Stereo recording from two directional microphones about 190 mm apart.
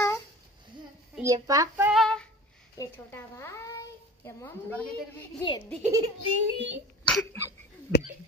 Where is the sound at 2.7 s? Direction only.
10° left (ahead or behind).